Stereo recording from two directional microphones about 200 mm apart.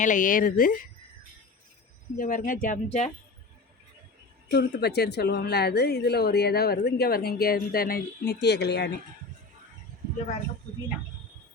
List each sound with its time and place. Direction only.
0.0 s a woman's voice: 40° left (ahead or behind)
2.1 s speech: 45° left (ahead or behind)
4.5 s a woman's voice: 55° left (ahead or behind)